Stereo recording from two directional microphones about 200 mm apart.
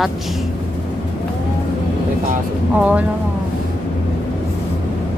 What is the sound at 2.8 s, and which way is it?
Speech, 5° right (ahead or behind).